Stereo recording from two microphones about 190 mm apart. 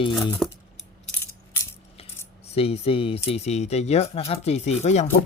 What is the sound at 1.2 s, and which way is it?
Music, 15° left (ahead or behind).